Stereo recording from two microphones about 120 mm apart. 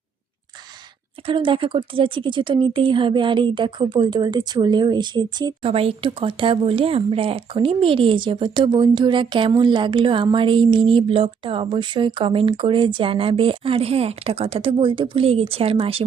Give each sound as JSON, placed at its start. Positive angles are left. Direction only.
{"t": 1.3, "sound": "speech", "side_deg": -45}
{"t": 5.7, "sound": "speech", "side_deg": -50}